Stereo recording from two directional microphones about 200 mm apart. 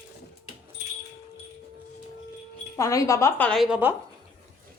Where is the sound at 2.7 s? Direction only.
15° left (ahead or behind); by 3.9 s 5° right (ahead or behind).